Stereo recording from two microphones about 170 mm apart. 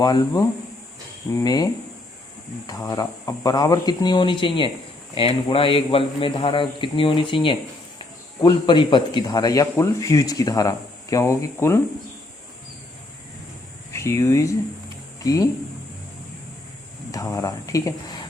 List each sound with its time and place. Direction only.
0.0 s a man's voice: 25° left (ahead or behind)
13.9 s speech: 15° left (ahead or behind)
17.1 s speech: 20° left (ahead or behind)